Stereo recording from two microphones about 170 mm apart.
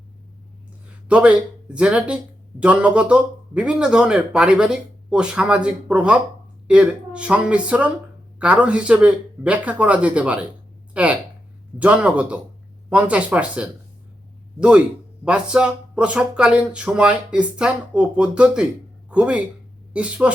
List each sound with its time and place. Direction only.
1.0 s speech: 5° right (ahead or behind)